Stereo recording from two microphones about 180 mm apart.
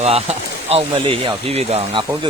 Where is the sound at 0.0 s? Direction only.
35° right (ahead or behind).